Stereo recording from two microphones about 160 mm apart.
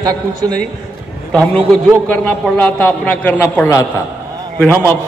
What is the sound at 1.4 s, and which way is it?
A man's voice, 5° left (ahead or behind).